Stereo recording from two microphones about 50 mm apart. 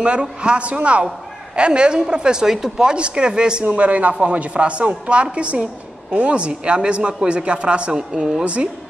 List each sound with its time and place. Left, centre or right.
0.0 s a woman's voice: right
3.7 s a woman's voice: right; by 8.5 s centre